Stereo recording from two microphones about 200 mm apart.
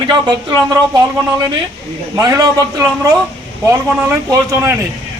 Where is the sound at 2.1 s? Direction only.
15° right (ahead or behind).